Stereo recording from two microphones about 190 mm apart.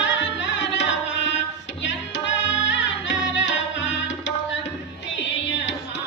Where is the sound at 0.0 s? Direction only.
75° left (ahead or behind).